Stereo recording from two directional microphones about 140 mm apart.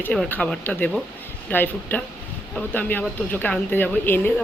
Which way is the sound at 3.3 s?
15° left (ahead or behind).